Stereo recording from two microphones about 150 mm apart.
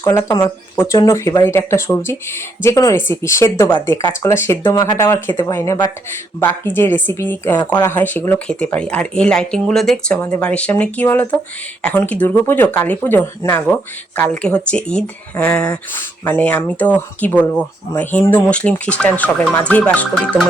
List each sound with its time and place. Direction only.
0.0 s speech: 20° left (ahead or behind)